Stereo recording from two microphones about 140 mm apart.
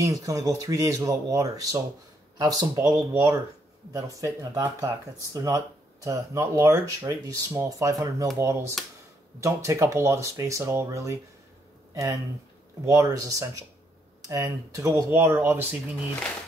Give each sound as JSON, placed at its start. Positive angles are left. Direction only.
{"t": 0.0, "sound": "speech", "side_deg": -25}
{"t": 8.8, "sound": "speech", "side_deg": 0}
{"t": 9.4, "sound": "speech", "side_deg": -20}